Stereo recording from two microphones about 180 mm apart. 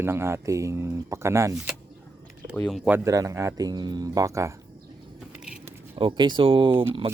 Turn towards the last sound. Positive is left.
turn(degrees=-30)  # may be behind; listen again after turning